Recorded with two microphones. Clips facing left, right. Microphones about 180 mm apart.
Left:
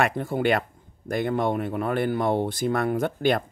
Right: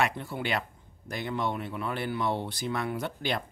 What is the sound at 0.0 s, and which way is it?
Speech, 50° left (ahead or behind).